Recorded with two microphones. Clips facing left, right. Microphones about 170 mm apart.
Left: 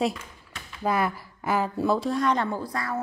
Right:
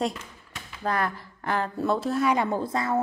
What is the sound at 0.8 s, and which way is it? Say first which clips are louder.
A woman's voice: left 2 dB; 10° left (ahead or behind).